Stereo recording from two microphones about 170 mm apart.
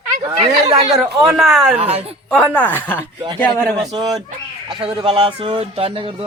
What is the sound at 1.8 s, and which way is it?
Speech, 35° right (ahead or behind).